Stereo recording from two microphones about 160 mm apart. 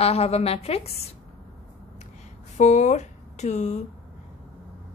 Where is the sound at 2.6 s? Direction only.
45° left (ahead or behind).